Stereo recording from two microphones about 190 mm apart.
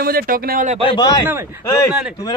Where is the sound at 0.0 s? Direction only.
50° right (ahead or behind).